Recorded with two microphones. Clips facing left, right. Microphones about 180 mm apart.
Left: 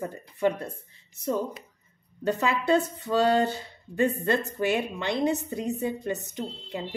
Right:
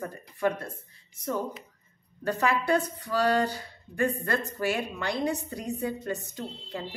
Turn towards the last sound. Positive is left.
turn(degrees=20)  # may be behind; listen again after turning